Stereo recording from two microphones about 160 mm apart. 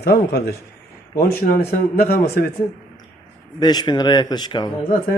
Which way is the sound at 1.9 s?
75° left (ahead or behind).